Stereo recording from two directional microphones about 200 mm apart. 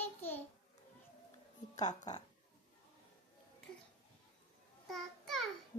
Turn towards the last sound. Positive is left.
turn(degrees=0)  # may be behind; listen again after turning